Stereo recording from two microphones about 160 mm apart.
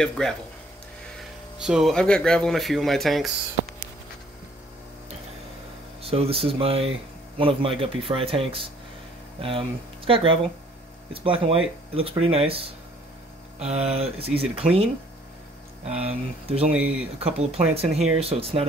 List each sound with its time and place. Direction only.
0.0 s speech: 5° left (ahead or behind)
1.6 s speech: 5° right (ahead or behind)
6.0 s speech: 35° right (ahead or behind)
16.0 s speech: 40° right (ahead or behind)
16.7 s speech: 5° right (ahead or behind)
17.2 s speech: 40° right (ahead or behind)